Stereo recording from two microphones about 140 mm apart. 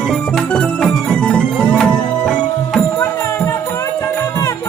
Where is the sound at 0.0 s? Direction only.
5° left (ahead or behind).